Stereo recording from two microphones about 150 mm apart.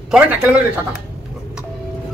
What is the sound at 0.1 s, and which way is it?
Speech, 10° right (ahead or behind).